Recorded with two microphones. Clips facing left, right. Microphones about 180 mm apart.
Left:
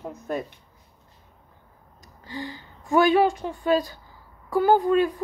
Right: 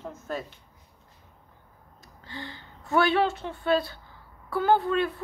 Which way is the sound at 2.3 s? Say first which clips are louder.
Left 6 dB; 15° left (ahead or behind).